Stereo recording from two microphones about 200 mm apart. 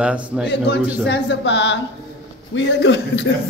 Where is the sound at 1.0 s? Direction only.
60° left (ahead or behind).